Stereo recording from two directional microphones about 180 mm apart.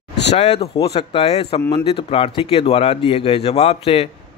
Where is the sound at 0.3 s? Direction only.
35° left (ahead or behind).